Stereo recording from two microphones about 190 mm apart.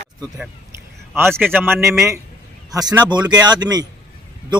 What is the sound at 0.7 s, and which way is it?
A man's voice, 10° right (ahead or behind).